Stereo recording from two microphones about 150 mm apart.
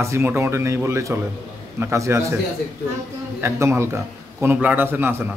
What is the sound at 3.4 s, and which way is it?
A man's voice, 20° right (ahead or behind).